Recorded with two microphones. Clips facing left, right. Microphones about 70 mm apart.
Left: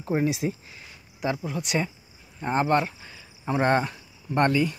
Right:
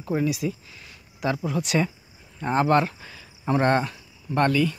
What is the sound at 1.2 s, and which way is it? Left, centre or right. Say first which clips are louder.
Speech: right 3 dB; centre.